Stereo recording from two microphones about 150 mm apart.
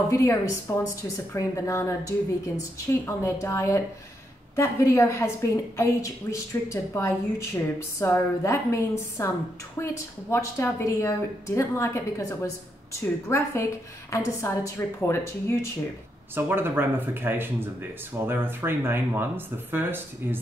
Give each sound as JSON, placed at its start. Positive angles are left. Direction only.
{"t": 0.1, "sound": "a woman's voice", "side_deg": 20}
{"t": 16.3, "sound": "speech", "side_deg": -15}